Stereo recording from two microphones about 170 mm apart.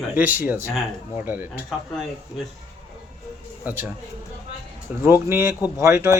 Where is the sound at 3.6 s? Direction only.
10° right (ahead or behind).